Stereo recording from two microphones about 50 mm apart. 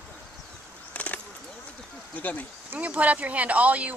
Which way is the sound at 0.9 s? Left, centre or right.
Left.